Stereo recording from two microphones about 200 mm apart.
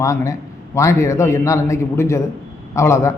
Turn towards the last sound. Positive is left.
turn(degrees=15)  # may be behind; listen again after turning